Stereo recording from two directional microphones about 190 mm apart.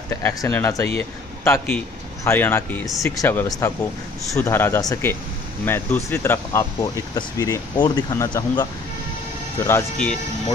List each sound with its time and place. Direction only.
0.1 s speech: 15° left (ahead or behind)